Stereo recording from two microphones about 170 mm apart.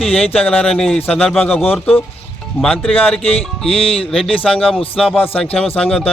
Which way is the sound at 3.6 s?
35° left (ahead or behind).